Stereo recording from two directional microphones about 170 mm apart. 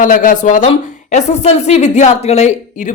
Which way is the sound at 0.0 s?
50° left (ahead or behind).